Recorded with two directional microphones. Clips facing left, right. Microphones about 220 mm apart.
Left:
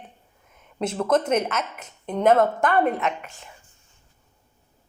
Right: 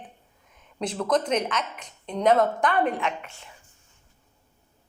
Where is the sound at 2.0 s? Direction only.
55° left (ahead or behind).